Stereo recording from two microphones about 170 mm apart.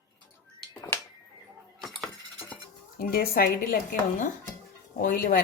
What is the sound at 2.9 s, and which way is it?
Speech, 60° left (ahead or behind).